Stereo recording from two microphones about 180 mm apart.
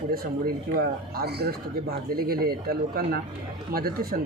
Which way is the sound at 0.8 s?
65° right (ahead or behind).